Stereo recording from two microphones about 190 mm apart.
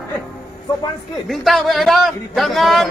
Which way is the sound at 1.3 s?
Centre (ahead or behind).